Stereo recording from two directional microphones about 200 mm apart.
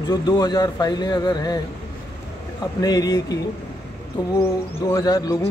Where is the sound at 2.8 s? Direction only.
20° left (ahead or behind).